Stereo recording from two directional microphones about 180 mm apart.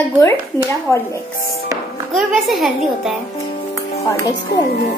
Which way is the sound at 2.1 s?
Centre (ahead or behind).